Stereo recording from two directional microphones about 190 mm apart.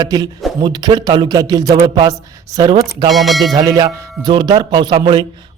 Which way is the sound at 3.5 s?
20° right (ahead or behind).